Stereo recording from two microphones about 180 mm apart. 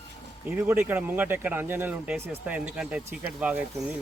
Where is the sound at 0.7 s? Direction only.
10° right (ahead or behind).